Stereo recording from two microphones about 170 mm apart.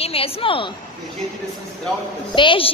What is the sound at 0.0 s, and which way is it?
Speech, 35° left (ahead or behind).